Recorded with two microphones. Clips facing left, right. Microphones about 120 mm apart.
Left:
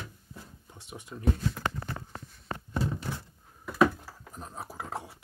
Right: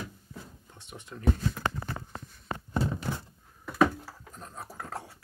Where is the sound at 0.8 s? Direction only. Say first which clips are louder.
Left 2 dB; 10° left (ahead or behind).